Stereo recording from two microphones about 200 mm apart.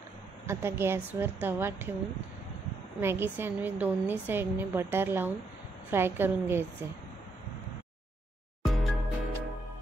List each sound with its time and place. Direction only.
0.5 s a woman's voice: 10° right (ahead or behind)
3.0 s a woman's voice: 10° right (ahead or behind)
8.6 s music: centre (ahead or behind)